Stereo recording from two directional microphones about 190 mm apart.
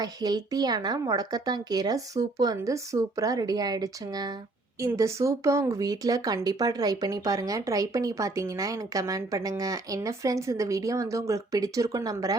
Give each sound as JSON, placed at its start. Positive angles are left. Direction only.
{"t": 0.0, "sound": "speech", "side_deg": -20}